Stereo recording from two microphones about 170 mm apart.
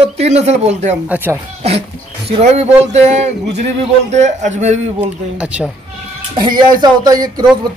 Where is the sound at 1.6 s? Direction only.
35° right (ahead or behind).